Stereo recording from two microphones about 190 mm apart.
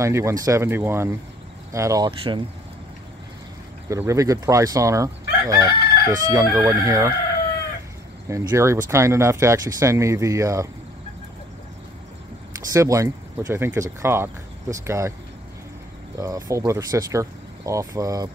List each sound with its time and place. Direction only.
0.0 s speech: 15° right (ahead or behind)
2.0 s speech: 25° right (ahead or behind)
3.9 s speech: 15° right (ahead or behind)
8.3 s speech: 15° right (ahead or behind)
12.7 s speech: 15° right (ahead or behind)
16.2 s speech: 15° right (ahead or behind)